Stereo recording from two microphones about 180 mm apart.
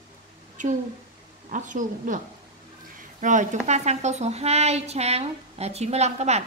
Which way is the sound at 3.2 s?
45° right (ahead or behind).